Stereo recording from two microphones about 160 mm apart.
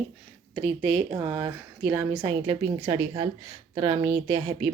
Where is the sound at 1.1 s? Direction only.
20° right (ahead or behind).